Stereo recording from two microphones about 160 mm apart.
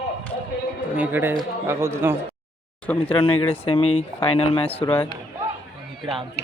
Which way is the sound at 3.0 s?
35° left (ahead or behind).